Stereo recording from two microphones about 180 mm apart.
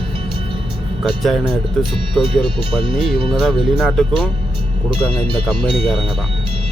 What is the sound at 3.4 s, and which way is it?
Speech, 5° right (ahead or behind).